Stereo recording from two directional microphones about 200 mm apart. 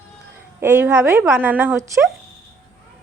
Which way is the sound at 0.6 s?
10° right (ahead or behind).